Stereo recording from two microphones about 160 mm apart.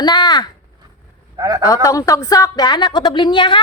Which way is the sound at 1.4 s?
25° right (ahead or behind).